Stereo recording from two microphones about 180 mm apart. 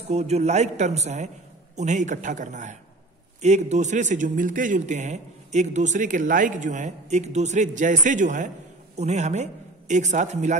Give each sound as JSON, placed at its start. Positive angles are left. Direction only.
{"t": 0.1, "sound": "a man's voice", "side_deg": -35}